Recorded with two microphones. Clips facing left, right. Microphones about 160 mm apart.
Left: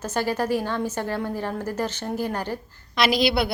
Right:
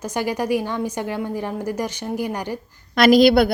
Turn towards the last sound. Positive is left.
turn(degrees=-45)  # may be behind; listen again after turning